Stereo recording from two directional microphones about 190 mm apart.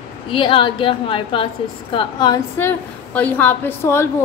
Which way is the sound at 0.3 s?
25° left (ahead or behind).